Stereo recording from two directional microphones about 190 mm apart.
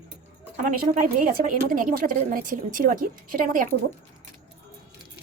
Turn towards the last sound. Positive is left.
turn(degrees=-45)  # may be behind; listen again after turning